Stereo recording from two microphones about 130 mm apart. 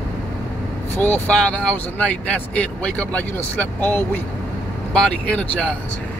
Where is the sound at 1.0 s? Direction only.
10° left (ahead or behind).